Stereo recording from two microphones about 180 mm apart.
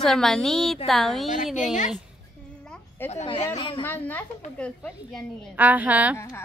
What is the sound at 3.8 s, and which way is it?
A woman's voice, 10° left (ahead or behind).